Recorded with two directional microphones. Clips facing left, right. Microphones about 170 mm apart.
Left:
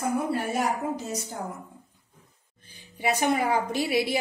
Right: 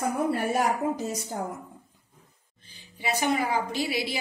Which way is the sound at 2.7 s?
50° left (ahead or behind).